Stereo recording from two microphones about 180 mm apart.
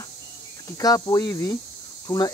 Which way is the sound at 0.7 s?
20° left (ahead or behind).